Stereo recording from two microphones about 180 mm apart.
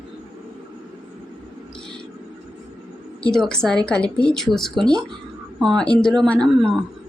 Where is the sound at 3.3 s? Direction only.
5° left (ahead or behind).